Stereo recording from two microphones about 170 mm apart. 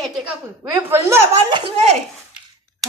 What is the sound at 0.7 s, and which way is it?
Speech, 15° right (ahead or behind).